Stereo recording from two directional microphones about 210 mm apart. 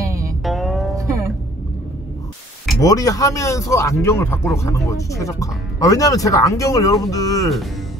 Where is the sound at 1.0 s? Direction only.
15° right (ahead or behind).